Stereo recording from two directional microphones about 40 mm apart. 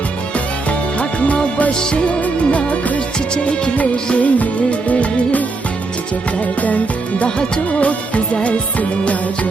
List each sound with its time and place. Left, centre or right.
0.9 s music: left
1.8 s music: left
2.2 s music: left
7.3 s music: left
7.8 s music: left